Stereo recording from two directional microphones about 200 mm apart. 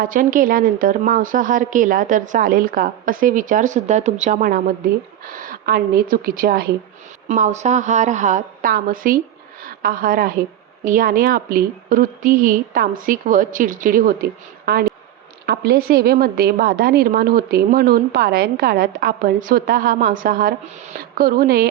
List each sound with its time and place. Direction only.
0.0 s a woman's voice: 45° right (ahead or behind)
7.3 s a woman's voice: 35° right (ahead or behind)